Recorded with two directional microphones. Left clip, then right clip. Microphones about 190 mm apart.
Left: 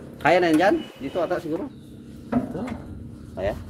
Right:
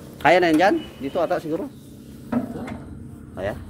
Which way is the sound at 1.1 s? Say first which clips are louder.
Right 2 dB; 20° right (ahead or behind).